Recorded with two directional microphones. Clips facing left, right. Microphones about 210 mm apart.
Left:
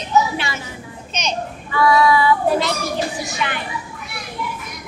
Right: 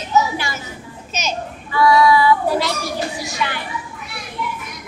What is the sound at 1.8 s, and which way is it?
Child singing, 25° left (ahead or behind).